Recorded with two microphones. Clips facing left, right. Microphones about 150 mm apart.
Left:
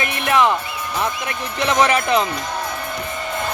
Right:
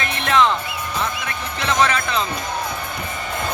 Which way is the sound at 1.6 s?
15° left (ahead or behind).